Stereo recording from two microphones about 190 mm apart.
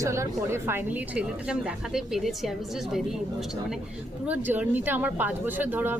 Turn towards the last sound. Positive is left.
turn(degrees=-10)  # may be behind; listen again after turning